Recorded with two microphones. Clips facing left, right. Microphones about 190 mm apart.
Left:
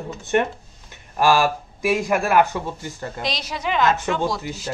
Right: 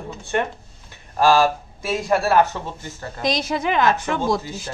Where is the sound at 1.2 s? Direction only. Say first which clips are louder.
Right 2 dB; 15° left (ahead or behind).